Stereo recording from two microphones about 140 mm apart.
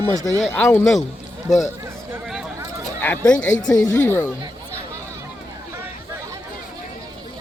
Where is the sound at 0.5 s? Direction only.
15° left (ahead or behind).